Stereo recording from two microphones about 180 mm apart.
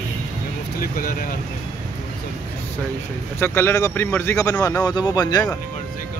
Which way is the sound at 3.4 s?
15° left (ahead or behind).